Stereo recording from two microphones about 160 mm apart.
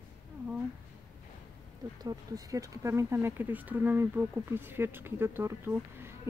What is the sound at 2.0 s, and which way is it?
A woman's voice, 25° right (ahead or behind).